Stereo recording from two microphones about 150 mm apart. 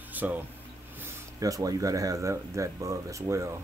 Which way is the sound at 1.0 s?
20° right (ahead or behind).